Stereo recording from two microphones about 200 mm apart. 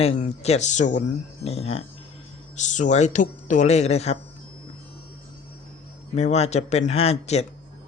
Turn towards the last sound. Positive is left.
turn(degrees=30)  # may be behind; listen again after turning